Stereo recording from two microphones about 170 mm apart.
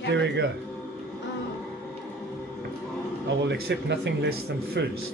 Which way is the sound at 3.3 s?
90° right.